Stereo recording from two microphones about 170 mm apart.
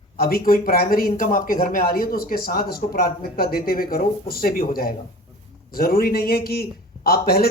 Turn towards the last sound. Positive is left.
turn(degrees=60)  # may be behind; listen again after turning